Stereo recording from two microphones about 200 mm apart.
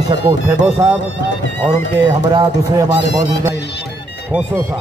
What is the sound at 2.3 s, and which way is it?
Speech, 20° right (ahead or behind).